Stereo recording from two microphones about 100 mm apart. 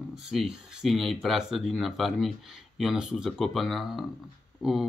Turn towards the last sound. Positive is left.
turn(degrees=-5)  # may be behind; listen again after turning